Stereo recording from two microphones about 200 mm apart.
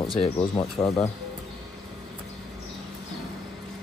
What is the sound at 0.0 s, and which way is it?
Speech, 25° left (ahead or behind).